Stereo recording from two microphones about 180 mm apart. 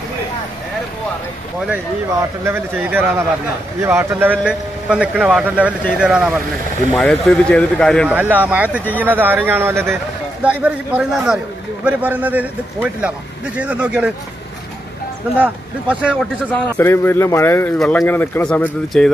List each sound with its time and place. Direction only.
2.4 s a man's voice: 10° right (ahead or behind); by 8.1 s 5° left (ahead or behind)
8.1 s a man's voice: 10° right (ahead or behind)
15.3 s a man's voice: 5° right (ahead or behind)
16.5 s speech: 15° left (ahead or behind)